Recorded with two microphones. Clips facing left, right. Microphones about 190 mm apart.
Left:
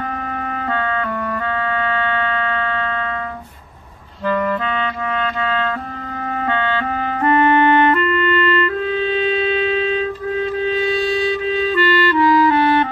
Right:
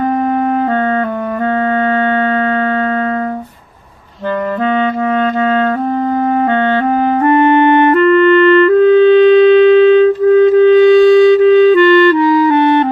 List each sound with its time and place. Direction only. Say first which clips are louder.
7.2 s clarinet: right 4 dB; 20° right (ahead or behind)
8.7 s wind instrument: right 14 dB; 55° right (ahead or behind)